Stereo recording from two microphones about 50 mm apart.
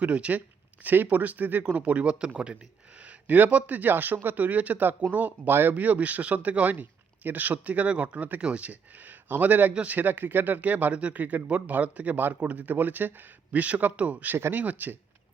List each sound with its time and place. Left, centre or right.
0.0 s speech: right
0.3 s speech: right
3.0 s a man's voice: right
13.5 s a man's voice: right